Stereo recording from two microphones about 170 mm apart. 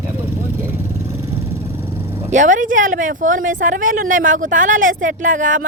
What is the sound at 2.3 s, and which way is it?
Speech, 50° right (ahead or behind).